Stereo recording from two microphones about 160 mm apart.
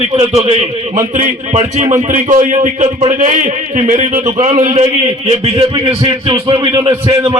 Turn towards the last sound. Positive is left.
turn(degrees=-35)  # may be behind; listen again after turning